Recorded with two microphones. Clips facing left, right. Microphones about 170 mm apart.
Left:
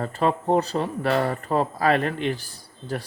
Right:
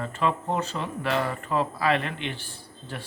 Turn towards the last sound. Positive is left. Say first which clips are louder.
# left 7 dB
turn(degrees=40)  # may be behind; listen again after turning